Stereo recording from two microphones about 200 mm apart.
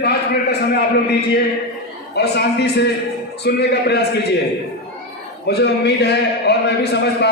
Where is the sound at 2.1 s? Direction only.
55° left (ahead or behind).